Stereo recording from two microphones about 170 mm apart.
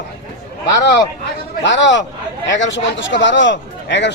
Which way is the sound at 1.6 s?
90° left.